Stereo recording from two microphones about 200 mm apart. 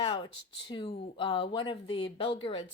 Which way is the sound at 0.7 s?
25° left (ahead or behind).